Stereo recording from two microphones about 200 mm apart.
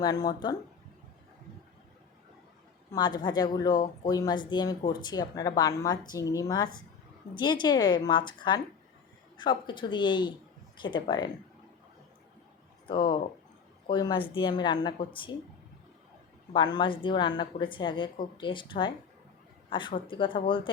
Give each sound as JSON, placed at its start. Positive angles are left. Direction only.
{"t": 0.0, "sound": "speech", "side_deg": 20}
{"t": 2.9, "sound": "speech", "side_deg": 20}
{"t": 12.9, "sound": "speech", "side_deg": 25}
{"t": 16.5, "sound": "speech", "side_deg": 25}